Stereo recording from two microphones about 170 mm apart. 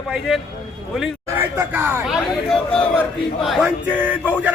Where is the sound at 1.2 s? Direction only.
15° right (ahead or behind).